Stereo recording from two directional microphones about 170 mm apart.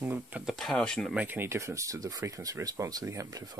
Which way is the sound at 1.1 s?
10° right (ahead or behind).